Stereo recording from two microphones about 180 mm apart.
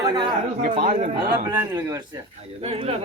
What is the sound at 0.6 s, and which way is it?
Speech, 45° right (ahead or behind).